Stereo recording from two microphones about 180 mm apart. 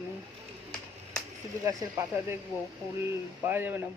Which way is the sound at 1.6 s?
15° right (ahead or behind).